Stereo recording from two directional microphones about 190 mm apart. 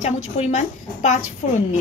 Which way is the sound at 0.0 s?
35° left (ahead or behind).